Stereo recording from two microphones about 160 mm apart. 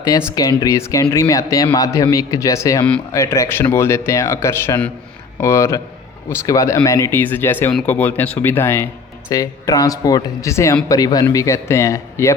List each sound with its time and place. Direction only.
0.3 s a man's voice: 20° left (ahead or behind)